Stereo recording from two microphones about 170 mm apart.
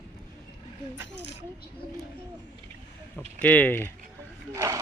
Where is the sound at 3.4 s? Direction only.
10° left (ahead or behind).